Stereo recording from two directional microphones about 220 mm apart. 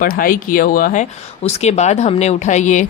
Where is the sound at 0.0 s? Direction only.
40° left (ahead or behind).